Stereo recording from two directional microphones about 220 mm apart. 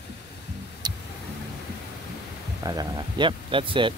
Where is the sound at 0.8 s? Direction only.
20° right (ahead or behind).